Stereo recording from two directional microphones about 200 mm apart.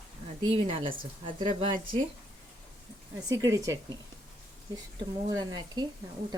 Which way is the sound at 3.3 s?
15° right (ahead or behind).